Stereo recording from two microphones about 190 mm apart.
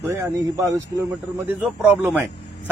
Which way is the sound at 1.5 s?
5° right (ahead or behind).